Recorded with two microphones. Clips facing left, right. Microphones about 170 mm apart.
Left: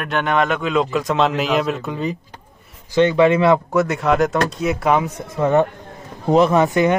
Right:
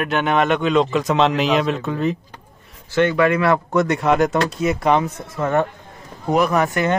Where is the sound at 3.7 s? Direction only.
5° left (ahead or behind).